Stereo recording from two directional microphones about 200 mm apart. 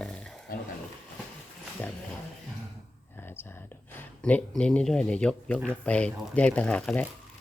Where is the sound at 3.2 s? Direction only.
10° left (ahead or behind).